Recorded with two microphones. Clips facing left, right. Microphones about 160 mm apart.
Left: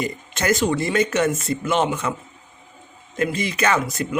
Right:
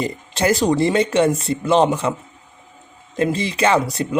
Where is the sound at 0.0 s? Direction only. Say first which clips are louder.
Right 4 dB; 30° right (ahead or behind).